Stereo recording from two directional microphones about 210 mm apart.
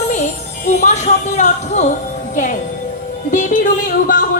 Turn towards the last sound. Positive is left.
turn(degrees=40)  # may be behind; listen again after turning